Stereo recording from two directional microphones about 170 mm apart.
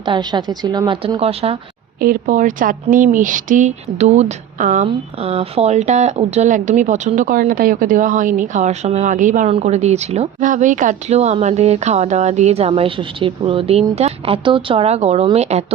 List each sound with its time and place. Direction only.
0.0 s a woman's voice: 25° right (ahead or behind)
2.0 s a woman's voice: 55° right (ahead or behind)
9.5 s speech: 40° right (ahead or behind)